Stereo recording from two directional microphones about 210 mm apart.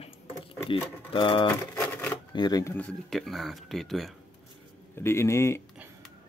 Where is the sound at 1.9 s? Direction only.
10° left (ahead or behind).